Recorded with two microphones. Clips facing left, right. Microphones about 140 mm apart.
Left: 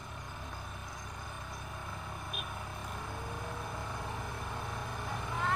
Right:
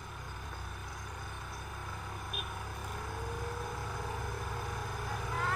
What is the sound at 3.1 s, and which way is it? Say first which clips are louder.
Vehicle: right 2 dB; centre (ahead or behind).